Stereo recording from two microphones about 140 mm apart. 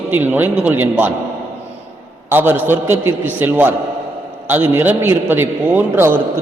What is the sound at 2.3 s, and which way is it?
A man's voice, 15° right (ahead or behind).